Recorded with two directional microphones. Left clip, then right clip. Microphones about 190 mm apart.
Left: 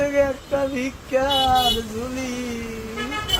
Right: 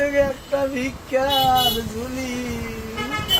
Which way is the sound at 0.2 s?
15° left (ahead or behind).